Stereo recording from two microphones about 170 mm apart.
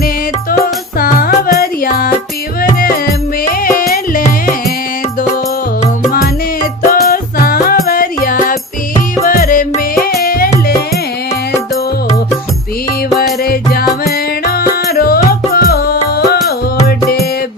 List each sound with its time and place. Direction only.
0.6 s music: 60° left (ahead or behind)
6.1 s music: 55° left (ahead or behind)
13.4 s music: 65° left (ahead or behind)